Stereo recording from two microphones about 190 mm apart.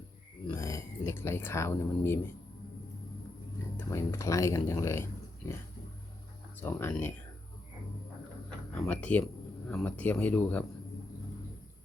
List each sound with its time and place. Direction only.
0.4 s speech: 15° left (ahead or behind)
3.8 s speech: 15° left (ahead or behind)
6.6 s speech: 10° left (ahead or behind)
8.7 s speech: 5° left (ahead or behind)